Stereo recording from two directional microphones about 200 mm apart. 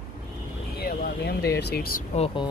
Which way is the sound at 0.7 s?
50° left (ahead or behind).